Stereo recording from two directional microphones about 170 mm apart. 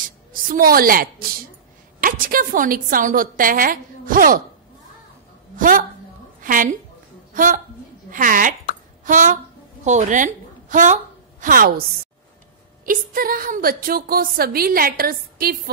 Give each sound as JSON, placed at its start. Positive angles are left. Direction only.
{"t": 0.0, "sound": "music", "side_deg": -55}
{"t": 2.0, "sound": "a woman's voice", "side_deg": -55}
{"t": 5.6, "sound": "a woman's voice", "side_deg": -50}
{"t": 11.4, "sound": "a woman's voice", "side_deg": -60}
{"t": 12.8, "sound": "a woman's voice", "side_deg": -55}